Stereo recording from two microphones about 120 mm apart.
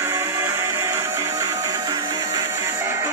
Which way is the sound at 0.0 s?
25° right (ahead or behind).